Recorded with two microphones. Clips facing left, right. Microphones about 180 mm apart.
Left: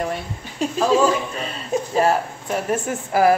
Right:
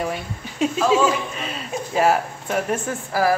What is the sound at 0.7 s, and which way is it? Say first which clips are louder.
Speech: left 2 dB; 40° left (ahead or behind).